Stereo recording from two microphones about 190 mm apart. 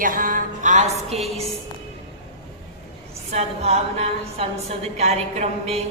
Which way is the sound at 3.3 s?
35° right (ahead or behind).